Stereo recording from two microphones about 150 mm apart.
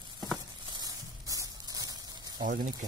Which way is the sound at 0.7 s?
25° right (ahead or behind).